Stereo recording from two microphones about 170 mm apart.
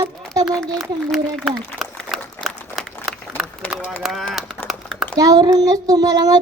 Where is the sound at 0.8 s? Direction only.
Centre (ahead or behind).